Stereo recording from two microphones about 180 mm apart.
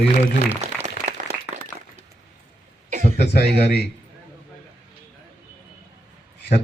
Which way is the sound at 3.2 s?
65° left (ahead or behind).